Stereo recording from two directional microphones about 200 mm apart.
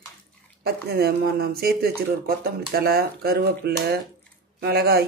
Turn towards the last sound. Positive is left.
turn(degrees=-50)  # may be behind; listen again after turning